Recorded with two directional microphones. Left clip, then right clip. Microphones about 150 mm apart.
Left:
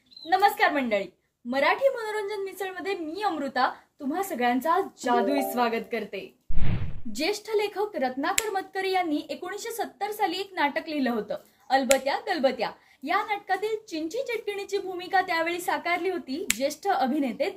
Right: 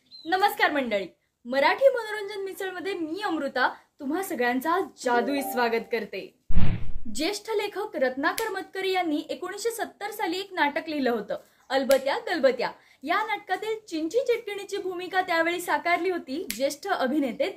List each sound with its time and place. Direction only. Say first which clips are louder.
0.3 s a woman's voice: left 1 dB; 25° right (ahead or behind)